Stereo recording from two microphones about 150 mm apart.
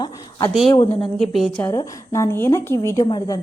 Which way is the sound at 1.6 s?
20° left (ahead or behind).